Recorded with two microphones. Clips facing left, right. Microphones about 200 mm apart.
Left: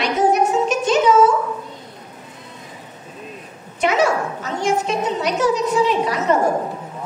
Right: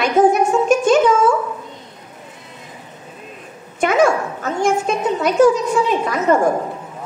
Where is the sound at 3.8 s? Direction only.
50° right (ahead or behind).